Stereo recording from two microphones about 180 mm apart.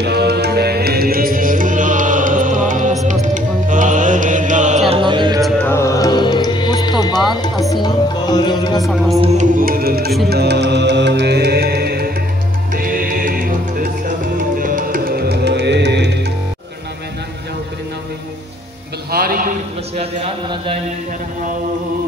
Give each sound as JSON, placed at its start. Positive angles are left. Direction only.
{"t": 0.0, "sound": "music", "side_deg": -65}
{"t": 5.4, "sound": "music", "side_deg": 10}
{"t": 9.6, "sound": "music", "side_deg": -55}
{"t": 19.1, "sound": "a sound", "side_deg": -55}
{"t": 20.0, "sound": "speech", "side_deg": -30}